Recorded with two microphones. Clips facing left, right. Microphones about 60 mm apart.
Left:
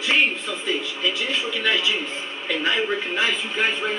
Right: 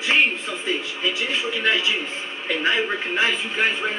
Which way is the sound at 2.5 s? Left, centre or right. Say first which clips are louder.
Right 1 dB; right.